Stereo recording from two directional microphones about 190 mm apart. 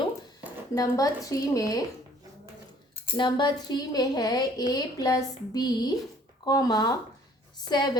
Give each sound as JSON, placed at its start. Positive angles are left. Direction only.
{"t": 0.8, "sound": "a woman's voice", "side_deg": 20}
{"t": 3.2, "sound": "a woman's voice", "side_deg": 25}